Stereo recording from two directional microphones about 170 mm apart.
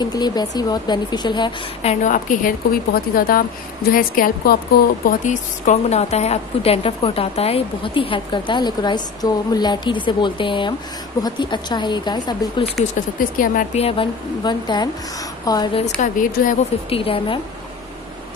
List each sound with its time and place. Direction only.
0.0 s speech: 25° left (ahead or behind)
1.8 s a woman's voice: 45° left (ahead or behind)
5.0 s a woman's voice: 45° left (ahead or behind); by 12.7 s 25° left (ahead or behind)
13.7 s speech: 35° left (ahead or behind)
15.8 s a woman's voice: 50° left (ahead or behind)
16.9 s a woman's voice: 30° left (ahead or behind)